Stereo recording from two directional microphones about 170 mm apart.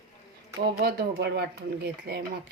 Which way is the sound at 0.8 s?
75° right (ahead or behind).